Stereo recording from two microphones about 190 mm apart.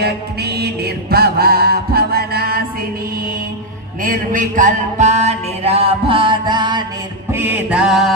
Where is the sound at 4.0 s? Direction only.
45° right (ahead or behind); by 6.9 s 25° right (ahead or behind).